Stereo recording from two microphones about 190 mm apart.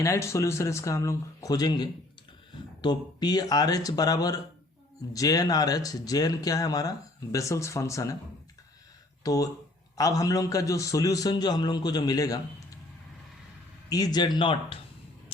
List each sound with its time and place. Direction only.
0.0 s a man's voice: 15° left (ahead or behind)
9.2 s a man's voice: 20° left (ahead or behind)
13.9 s speech: 20° left (ahead or behind)